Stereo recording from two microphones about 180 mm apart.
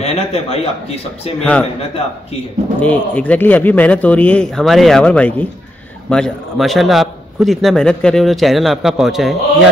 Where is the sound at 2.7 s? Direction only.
10° left (ahead or behind).